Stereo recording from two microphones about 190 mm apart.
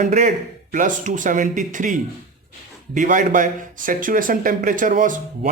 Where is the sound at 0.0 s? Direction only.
40° right (ahead or behind).